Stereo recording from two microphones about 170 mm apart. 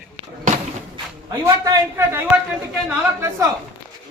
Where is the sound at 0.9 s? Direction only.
20° right (ahead or behind).